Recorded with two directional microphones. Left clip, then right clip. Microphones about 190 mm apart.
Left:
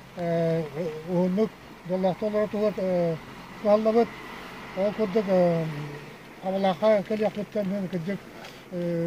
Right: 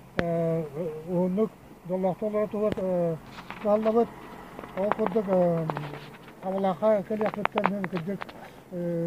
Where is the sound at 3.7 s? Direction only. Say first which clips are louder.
Left 2 dB; 15° left (ahead or behind).